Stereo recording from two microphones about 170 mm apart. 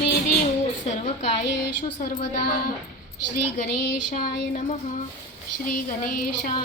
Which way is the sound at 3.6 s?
55° left (ahead or behind).